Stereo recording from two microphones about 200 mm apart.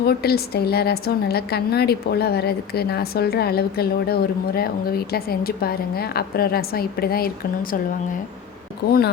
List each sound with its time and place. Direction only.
0.0 s a woman's voice: 50° left (ahead or behind)